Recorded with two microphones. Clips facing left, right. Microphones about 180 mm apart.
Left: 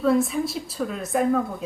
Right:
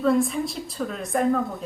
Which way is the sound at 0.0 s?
Centre (ahead or behind).